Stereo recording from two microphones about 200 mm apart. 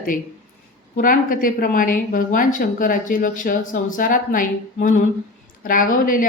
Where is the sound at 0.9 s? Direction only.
45° left (ahead or behind).